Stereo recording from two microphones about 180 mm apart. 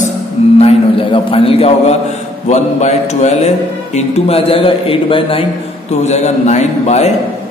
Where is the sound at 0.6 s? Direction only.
30° left (ahead or behind).